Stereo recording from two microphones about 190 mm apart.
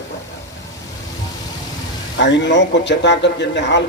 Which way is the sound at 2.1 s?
70° left (ahead or behind).